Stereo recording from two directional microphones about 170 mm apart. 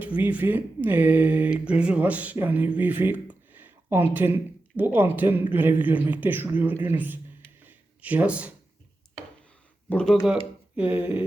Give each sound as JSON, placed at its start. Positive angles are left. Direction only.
{"t": 0.0, "sound": "speech", "side_deg": -10}
{"t": 7.6, "sound": "a sound", "side_deg": -10}
{"t": 9.9, "sound": "speech", "side_deg": 5}
{"t": 10.8, "sound": "speech", "side_deg": -10}